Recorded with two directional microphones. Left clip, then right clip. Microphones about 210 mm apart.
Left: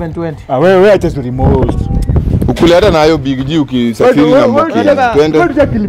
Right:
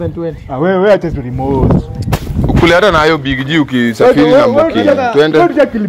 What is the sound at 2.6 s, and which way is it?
Speech, 30° left (ahead or behind).